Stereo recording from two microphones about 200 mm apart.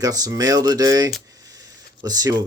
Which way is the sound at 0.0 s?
20° right (ahead or behind).